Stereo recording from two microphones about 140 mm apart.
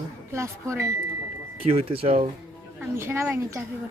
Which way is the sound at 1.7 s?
45° right (ahead or behind).